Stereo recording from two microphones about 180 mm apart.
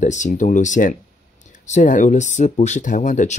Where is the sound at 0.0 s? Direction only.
45° left (ahead or behind).